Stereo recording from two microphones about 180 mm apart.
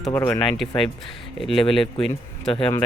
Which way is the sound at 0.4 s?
Centre (ahead or behind).